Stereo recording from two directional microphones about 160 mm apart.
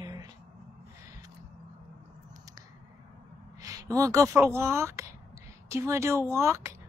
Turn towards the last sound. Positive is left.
turn(degrees=-15)  # may be behind; listen again after turning